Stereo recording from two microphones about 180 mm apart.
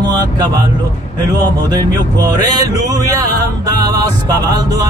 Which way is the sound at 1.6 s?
20° right (ahead or behind).